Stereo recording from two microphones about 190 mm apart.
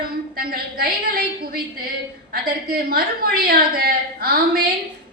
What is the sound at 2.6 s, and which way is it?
A woman's voice, 50° right (ahead or behind).